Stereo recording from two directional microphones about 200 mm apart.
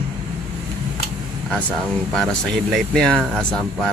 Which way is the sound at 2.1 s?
Centre (ahead or behind).